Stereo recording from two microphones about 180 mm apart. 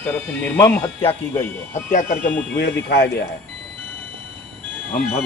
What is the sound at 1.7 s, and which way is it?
Speech, 45° left (ahead or behind).